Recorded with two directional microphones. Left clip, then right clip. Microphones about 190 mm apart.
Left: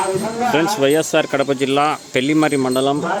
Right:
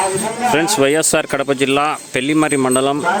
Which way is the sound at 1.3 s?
10° right (ahead or behind).